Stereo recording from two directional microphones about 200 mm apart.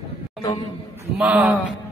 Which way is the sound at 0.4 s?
20° left (ahead or behind).